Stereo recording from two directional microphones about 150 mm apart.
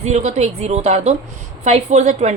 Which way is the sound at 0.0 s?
50° right (ahead or behind).